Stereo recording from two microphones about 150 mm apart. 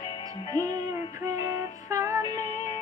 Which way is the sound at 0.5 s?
25° right (ahead or behind).